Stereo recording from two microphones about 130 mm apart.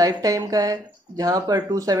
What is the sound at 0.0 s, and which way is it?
Speech, 30° right (ahead or behind).